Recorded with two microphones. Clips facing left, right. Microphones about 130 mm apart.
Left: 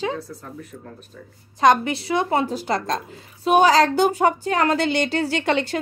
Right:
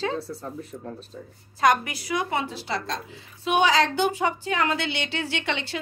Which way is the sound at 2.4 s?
45° left (ahead or behind).